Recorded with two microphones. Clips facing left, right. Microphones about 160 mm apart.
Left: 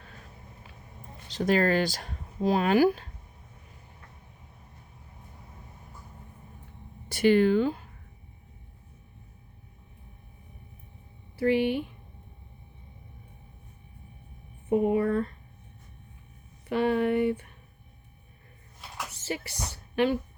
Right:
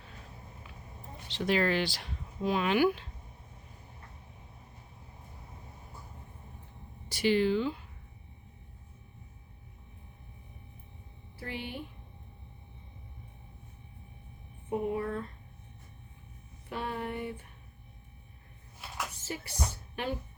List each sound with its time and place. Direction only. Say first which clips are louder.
1.3 s speech: left 4 dB; 45° left (ahead or behind)
7.1 s speech: left 6 dB; 50° left (ahead or behind)
11.3 s speech: left 16 dB; 75° left (ahead or behind)
14.7 s speech: left 8 dB; 80° left
16.6 s speech: left 11 dB; 80° left
19.1 s a sound: left 5 dB; 75° left (ahead or behind)